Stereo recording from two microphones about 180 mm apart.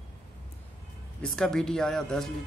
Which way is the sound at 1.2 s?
5° left (ahead or behind).